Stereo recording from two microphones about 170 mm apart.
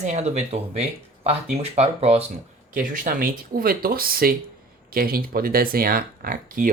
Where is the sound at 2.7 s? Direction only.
55° right (ahead or behind).